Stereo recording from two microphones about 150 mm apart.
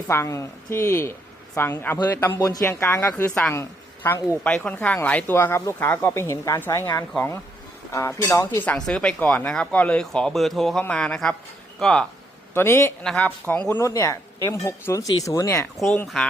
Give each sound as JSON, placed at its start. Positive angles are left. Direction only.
{"t": 0.1, "sound": "speech", "side_deg": 20}
{"t": 3.6, "sound": "a sound", "side_deg": 15}
{"t": 4.4, "sound": "speech", "side_deg": 10}
{"t": 12.5, "sound": "speech", "side_deg": 15}
{"t": 16.1, "sound": "speech", "side_deg": 0}